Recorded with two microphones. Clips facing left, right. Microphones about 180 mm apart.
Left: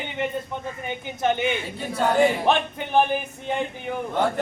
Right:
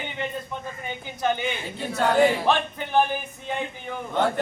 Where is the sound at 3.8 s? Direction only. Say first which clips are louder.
Even; 10° left (ahead or behind).